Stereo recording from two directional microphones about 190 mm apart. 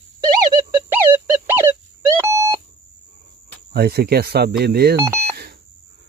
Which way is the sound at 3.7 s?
55° right (ahead or behind).